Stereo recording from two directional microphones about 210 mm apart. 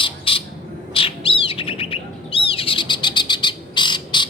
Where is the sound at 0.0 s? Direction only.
25° left (ahead or behind).